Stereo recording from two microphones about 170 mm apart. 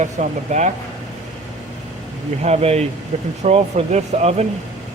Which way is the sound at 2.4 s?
40° right (ahead or behind).